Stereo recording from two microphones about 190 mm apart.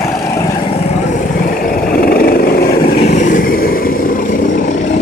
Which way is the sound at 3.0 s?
40° left (ahead or behind).